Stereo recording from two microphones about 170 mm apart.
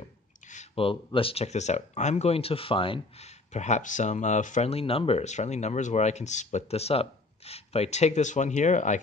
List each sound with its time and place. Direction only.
0.5 s speech: 40° left (ahead or behind)